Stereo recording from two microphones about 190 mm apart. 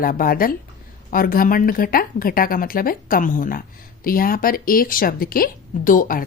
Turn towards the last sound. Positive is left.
turn(degrees=45)  # may be behind; listen again after turning